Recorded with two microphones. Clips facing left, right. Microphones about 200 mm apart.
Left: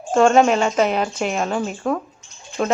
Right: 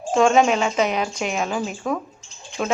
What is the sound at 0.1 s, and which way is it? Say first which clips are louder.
Speech: left 2 dB; centre (ahead or behind).